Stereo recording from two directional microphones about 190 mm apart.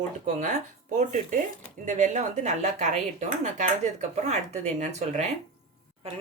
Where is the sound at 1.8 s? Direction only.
40° right (ahead or behind).